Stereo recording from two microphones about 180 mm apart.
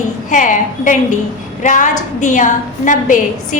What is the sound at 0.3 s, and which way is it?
A woman's voice, 45° left (ahead or behind).